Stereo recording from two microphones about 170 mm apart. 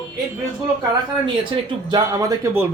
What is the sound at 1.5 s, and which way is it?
Speech, 30° right (ahead or behind).